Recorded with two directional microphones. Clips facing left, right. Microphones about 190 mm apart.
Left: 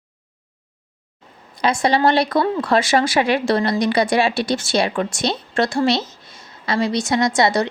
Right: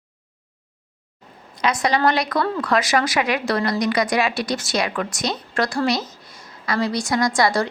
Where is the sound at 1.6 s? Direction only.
30° left (ahead or behind).